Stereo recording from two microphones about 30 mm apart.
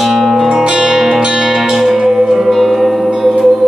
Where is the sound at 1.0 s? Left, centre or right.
Centre.